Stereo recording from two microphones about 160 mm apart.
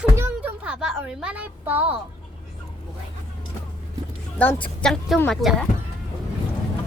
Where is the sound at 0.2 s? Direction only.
15° right (ahead or behind).